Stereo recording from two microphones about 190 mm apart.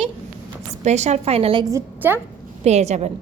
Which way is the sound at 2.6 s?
35° right (ahead or behind).